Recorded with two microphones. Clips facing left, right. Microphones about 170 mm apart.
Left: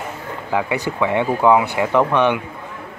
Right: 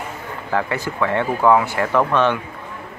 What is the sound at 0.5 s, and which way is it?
Speech, 10° left (ahead or behind).